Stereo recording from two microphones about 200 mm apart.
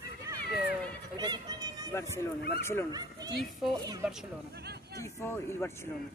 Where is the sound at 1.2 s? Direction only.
20° right (ahead or behind).